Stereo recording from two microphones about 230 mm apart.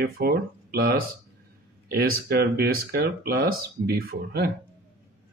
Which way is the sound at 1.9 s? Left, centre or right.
Right.